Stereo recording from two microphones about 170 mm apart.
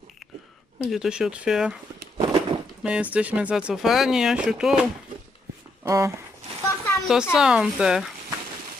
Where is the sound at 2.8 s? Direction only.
5° right (ahead or behind).